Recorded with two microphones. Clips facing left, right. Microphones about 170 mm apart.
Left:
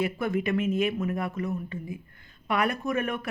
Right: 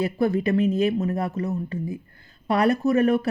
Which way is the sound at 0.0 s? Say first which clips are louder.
Right 5 dB; 35° right (ahead or behind).